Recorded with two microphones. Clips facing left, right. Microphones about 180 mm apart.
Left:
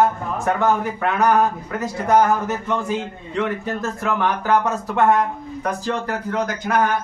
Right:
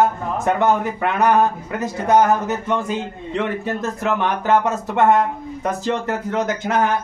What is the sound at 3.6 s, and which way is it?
Speech, 20° right (ahead or behind).